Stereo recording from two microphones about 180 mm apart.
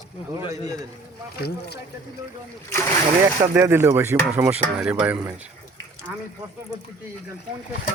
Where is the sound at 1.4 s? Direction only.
65° left (ahead or behind).